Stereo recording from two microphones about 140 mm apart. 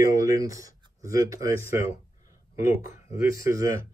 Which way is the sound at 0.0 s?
25° right (ahead or behind).